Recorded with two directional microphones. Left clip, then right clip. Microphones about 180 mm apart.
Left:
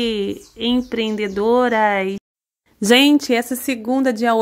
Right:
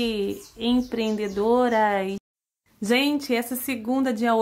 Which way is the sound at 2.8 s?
45° left (ahead or behind).